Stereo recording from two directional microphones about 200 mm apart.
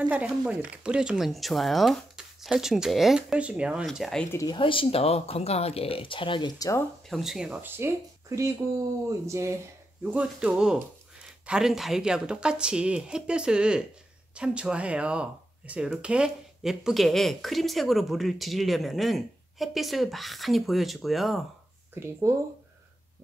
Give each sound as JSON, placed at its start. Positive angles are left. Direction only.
{"t": 0.1, "sound": "speech", "side_deg": -5}
{"t": 4.4, "sound": "speech", "side_deg": 25}
{"t": 7.1, "sound": "speech", "side_deg": 0}
{"t": 22.0, "sound": "speech", "side_deg": -10}